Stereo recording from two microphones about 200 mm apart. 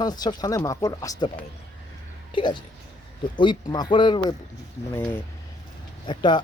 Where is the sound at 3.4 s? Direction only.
20° left (ahead or behind).